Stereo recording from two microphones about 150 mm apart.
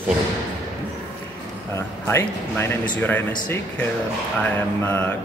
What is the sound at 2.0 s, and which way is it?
Speech, 15° left (ahead or behind).